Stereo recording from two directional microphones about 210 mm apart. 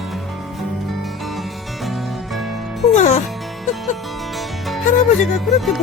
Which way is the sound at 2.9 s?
35° left (ahead or behind).